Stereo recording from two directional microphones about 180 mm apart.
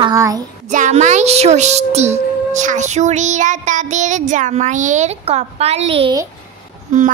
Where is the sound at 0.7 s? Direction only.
40° right (ahead or behind).